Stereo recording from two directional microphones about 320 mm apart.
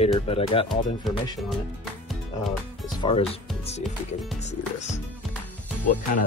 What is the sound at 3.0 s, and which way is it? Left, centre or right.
Speech, centre.